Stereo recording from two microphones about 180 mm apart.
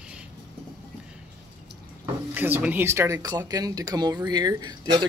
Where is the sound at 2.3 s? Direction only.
10° right (ahead or behind).